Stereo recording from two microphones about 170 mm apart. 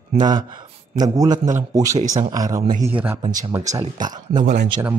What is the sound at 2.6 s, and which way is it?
Speech, 50° right (ahead or behind).